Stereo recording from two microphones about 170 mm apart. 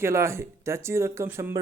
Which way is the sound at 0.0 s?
15° right (ahead or behind).